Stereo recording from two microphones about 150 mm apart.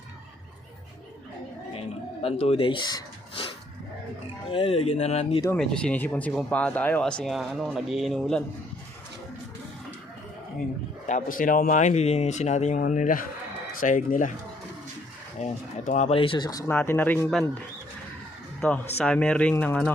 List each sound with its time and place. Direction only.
2.2 s speech: 45° left (ahead or behind)
4.5 s speech: 40° left (ahead or behind)
5.5 s speech: 5° left (ahead or behind)
11.0 s speech: 60° left (ahead or behind)
15.4 s speech: 50° left (ahead or behind); by 16.6 s 25° left (ahead or behind)
16.6 s speech: 15° left (ahead or behind)
18.6 s speech: 10° left (ahead or behind)